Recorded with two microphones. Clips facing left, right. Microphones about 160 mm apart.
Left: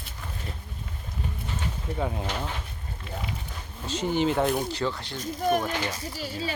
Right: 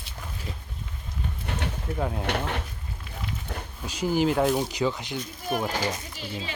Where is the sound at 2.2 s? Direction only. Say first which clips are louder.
Right 4 dB; 65° right (ahead or behind).